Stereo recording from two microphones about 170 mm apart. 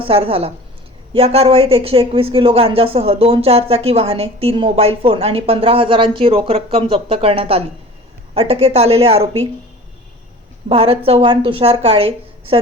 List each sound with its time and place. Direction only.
0.0 s speech: 35° right (ahead or behind)
10.7 s speech: 35° right (ahead or behind)